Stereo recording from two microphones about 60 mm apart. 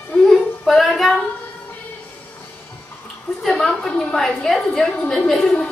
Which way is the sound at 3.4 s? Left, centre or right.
Centre.